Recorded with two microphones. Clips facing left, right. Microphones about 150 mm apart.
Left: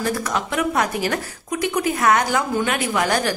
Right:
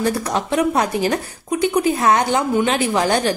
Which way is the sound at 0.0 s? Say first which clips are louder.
Right 3 dB; 35° right (ahead or behind).